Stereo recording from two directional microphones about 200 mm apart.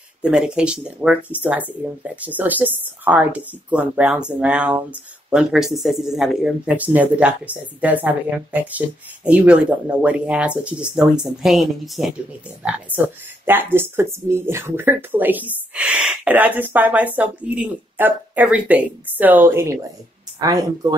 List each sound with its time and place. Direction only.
0.2 s speech: 5° right (ahead or behind)
13.5 s speech: 10° right (ahead or behind)